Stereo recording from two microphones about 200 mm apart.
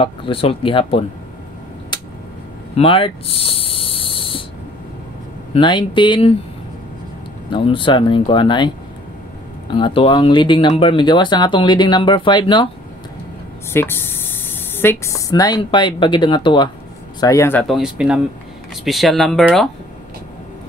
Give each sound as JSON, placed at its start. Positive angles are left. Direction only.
{"t": 0.0, "sound": "speech", "side_deg": 25}
{"t": 1.9, "sound": "a sound", "side_deg": 20}
{"t": 2.7, "sound": "speech", "side_deg": 30}
{"t": 5.5, "sound": "speech", "side_deg": 25}
{"t": 7.5, "sound": "speech", "side_deg": 25}
{"t": 13.7, "sound": "speech", "side_deg": 10}
{"t": 17.6, "sound": "speech", "side_deg": 0}